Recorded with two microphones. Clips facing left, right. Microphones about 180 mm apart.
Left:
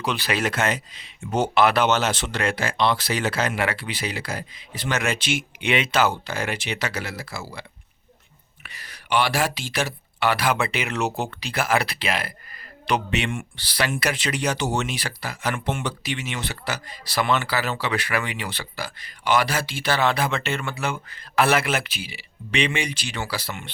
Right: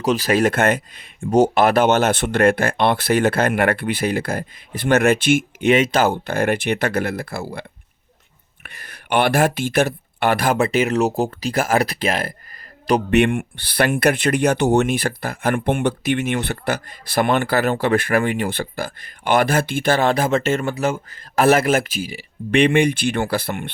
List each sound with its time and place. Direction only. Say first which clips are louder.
0.0 s speech: right 8 dB; 40° right (ahead or behind)
1.2 s speech: right 5 dB; 45° right (ahead or behind)
8.6 s speech: right 3 dB; 55° right (ahead or behind)
13.1 s speech: right 10 dB; 60° right (ahead or behind)